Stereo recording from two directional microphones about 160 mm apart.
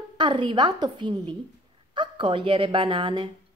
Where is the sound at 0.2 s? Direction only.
30° right (ahead or behind).